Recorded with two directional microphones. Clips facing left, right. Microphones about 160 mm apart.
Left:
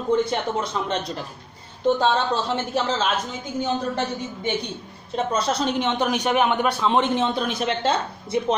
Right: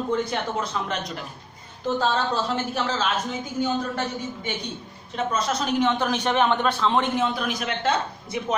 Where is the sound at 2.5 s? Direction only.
25° left (ahead or behind).